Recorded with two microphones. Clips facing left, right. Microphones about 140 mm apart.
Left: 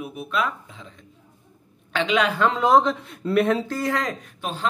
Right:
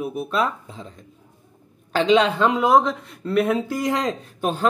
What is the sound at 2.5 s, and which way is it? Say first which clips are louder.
Speech: right 1 dB; 5° right (ahead or behind).